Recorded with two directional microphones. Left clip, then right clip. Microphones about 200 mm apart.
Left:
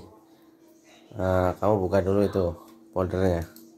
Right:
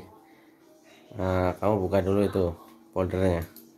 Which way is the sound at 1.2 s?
Centre (ahead or behind).